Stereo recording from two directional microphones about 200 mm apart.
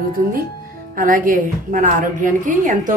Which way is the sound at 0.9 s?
45° right (ahead or behind).